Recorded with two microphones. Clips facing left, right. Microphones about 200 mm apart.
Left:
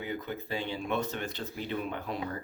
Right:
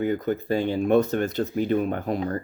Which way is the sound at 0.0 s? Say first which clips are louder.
Right 12 dB; 45° right (ahead or behind).